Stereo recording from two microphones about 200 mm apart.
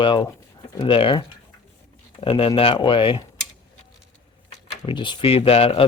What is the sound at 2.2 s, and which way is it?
Speech, 25° left (ahead or behind).